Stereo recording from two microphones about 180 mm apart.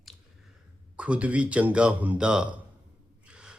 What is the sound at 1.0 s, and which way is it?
Speech, 5° right (ahead or behind).